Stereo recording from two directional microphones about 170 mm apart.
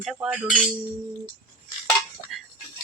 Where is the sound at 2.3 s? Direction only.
Centre (ahead or behind).